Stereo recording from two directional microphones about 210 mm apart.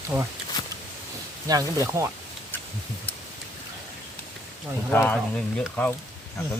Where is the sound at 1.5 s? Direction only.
15° right (ahead or behind).